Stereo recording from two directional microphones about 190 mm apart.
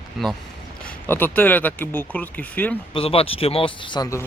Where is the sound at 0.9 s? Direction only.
10° left (ahead or behind).